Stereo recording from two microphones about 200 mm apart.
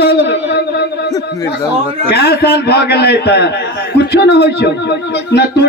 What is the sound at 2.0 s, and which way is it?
A man's voice, 55° left (ahead or behind).